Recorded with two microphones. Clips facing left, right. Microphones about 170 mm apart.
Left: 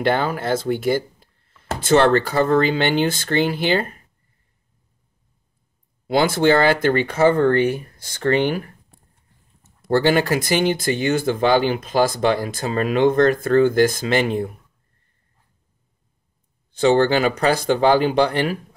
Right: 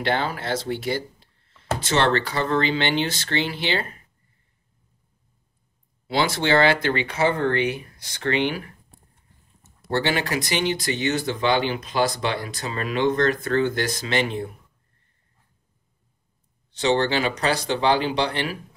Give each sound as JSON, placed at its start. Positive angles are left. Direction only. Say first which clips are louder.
{"t": 0.0, "sound": "speech", "louder": "left 5 dB", "side_deg": 45}
{"t": 6.0, "sound": "speech", "louder": "left 6 dB", "side_deg": 50}
{"t": 9.8, "sound": "speech", "louder": "left 7 dB", "side_deg": 50}
{"t": 16.7, "sound": "speech", "louder": "left 5 dB", "side_deg": 50}